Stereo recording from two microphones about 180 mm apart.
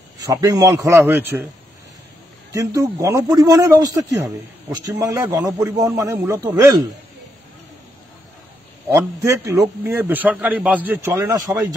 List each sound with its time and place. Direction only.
0.2 s a man's voice: 20° right (ahead or behind)
2.5 s a man's voice: 20° right (ahead or behind)
8.8 s a man's voice: 15° right (ahead or behind)